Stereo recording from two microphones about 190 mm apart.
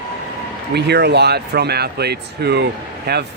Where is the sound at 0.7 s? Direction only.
60° right (ahead or behind).